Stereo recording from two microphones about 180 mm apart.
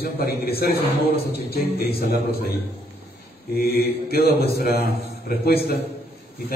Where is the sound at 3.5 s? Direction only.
60° left (ahead or behind).